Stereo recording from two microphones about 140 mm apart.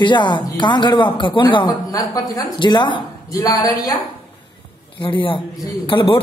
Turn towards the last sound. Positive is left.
turn(degrees=35)  # may be behind; listen again after turning